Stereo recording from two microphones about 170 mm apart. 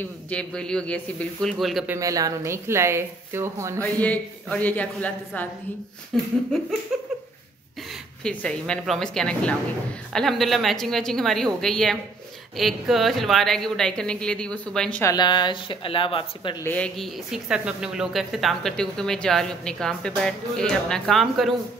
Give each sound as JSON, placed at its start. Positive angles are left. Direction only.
{"t": 0.0, "sound": "speech", "side_deg": 5}
{"t": 1.9, "sound": "speech", "side_deg": -20}
{"t": 3.8, "sound": "a woman's voice", "side_deg": 10}
{"t": 6.9, "sound": "a sound", "side_deg": -5}
{"t": 8.2, "sound": "speech", "side_deg": 5}
{"t": 15.1, "sound": "speech", "side_deg": 25}
{"t": 16.6, "sound": "speech", "side_deg": 5}